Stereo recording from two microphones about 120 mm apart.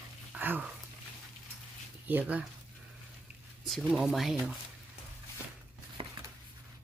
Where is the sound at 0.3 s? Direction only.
15° right (ahead or behind).